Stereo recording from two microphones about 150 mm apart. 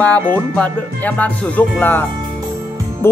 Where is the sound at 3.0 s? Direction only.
15° left (ahead or behind).